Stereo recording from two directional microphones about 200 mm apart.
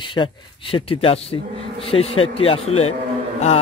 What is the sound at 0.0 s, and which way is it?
A man's voice, 25° left (ahead or behind).